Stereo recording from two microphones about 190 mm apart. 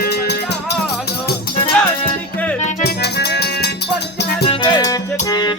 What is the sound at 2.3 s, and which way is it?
Music, 10° left (ahead or behind).